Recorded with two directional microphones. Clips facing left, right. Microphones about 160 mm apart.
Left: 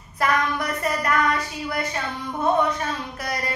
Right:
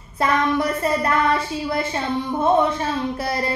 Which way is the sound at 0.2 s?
25° right (ahead or behind).